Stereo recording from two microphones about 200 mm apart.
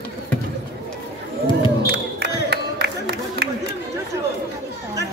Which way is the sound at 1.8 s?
55° right (ahead or behind).